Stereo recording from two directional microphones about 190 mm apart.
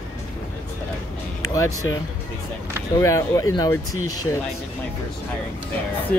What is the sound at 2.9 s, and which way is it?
Speech, 15° left (ahead or behind).